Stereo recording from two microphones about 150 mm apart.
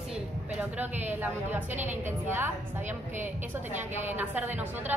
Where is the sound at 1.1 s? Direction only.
10° right (ahead or behind).